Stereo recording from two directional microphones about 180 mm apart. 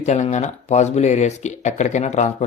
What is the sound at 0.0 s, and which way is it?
Speech, 40° left (ahead or behind).